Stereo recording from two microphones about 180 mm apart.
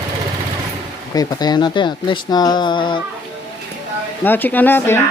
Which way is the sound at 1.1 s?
20° left (ahead or behind).